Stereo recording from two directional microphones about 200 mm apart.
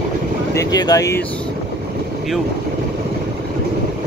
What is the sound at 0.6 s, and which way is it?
Speech, 20° left (ahead or behind).